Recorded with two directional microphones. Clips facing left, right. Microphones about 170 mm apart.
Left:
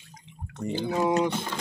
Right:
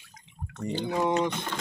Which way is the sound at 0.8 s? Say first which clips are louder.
Left 2 dB; centre (ahead or behind).